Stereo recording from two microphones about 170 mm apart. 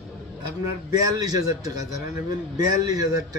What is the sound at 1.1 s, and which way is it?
A man's voice, 20° right (ahead or behind).